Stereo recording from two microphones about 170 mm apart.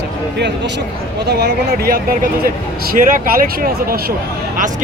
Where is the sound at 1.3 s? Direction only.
75° right (ahead or behind).